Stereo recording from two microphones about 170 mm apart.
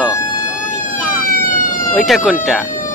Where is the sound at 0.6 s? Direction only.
50° left (ahead or behind).